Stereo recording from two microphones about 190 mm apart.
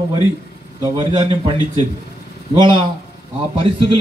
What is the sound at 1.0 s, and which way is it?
Speech, 25° right (ahead or behind).